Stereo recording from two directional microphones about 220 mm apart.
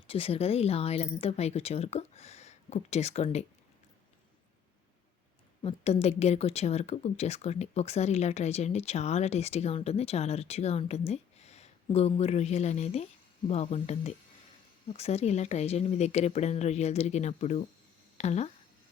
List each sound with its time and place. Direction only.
0.1 s speech: 25° left (ahead or behind)
5.6 s speech: 30° left (ahead or behind)